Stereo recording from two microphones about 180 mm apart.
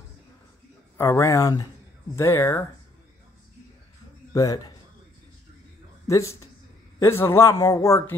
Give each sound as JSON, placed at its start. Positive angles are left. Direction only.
{"t": 0.9, "sound": "speech", "side_deg": 15}
{"t": 4.3, "sound": "a man's voice", "side_deg": 20}
{"t": 6.0, "sound": "speech", "side_deg": 15}